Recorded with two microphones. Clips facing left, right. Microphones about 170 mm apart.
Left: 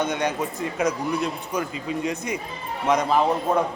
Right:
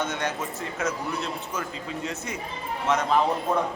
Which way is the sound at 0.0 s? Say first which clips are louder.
Left 4 dB; 15° left (ahead or behind).